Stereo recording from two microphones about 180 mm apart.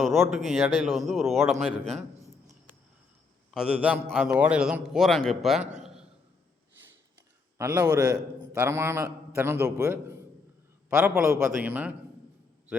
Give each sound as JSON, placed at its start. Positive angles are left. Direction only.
{"t": 0.0, "sound": "a man's voice", "side_deg": 0}
{"t": 3.5, "sound": "a man's voice", "side_deg": -5}
{"t": 5.8, "sound": "a sound", "side_deg": -5}
{"t": 7.6, "sound": "a man's voice", "side_deg": -15}